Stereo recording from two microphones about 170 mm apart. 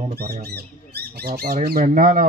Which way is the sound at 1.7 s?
50° right (ahead or behind).